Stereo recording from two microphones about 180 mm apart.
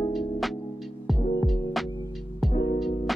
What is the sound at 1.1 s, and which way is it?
Heart sounds, centre (ahead or behind).